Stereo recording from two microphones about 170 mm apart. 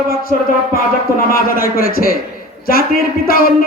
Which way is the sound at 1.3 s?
60° left (ahead or behind).